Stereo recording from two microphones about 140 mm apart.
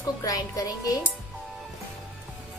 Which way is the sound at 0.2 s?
25° left (ahead or behind).